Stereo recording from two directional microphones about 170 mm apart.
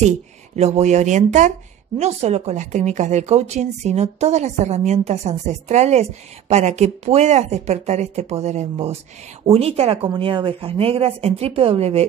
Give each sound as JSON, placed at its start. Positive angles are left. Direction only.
{"t": 0.6, "sound": "speech", "side_deg": -40}